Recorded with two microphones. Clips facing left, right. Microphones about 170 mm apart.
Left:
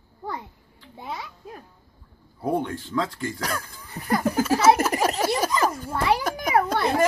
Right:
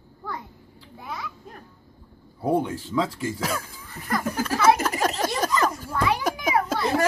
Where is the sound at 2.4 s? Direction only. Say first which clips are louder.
Right 2 dB; 5° right (ahead or behind).